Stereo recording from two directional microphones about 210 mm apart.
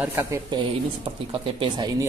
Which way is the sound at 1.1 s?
25° right (ahead or behind).